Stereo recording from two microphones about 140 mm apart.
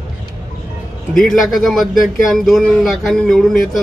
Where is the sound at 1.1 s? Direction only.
Centre (ahead or behind).